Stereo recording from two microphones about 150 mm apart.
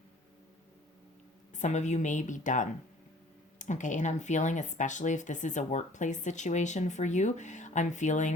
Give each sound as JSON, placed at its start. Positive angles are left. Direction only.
{"t": 1.5, "sound": "a woman's voice", "side_deg": 55}